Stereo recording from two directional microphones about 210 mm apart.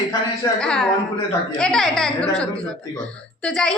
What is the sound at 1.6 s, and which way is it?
Speech, 5° left (ahead or behind).